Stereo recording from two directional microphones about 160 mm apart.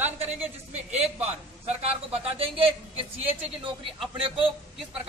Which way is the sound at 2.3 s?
35° right (ahead or behind).